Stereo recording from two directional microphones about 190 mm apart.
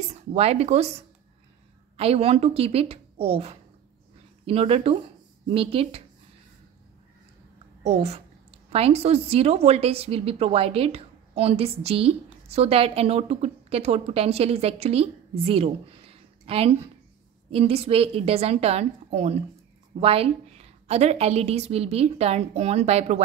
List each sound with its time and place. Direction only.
0.1 s a woman's voice: 35° right (ahead or behind)
2.0 s a woman's voice: 30° right (ahead or behind)
7.8 s a woman's voice: 35° right (ahead or behind)